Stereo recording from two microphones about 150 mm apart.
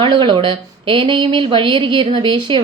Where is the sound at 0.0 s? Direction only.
30° right (ahead or behind).